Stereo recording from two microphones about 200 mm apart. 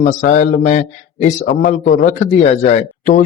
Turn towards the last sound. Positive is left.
turn(degrees=35)  # may be behind; listen again after turning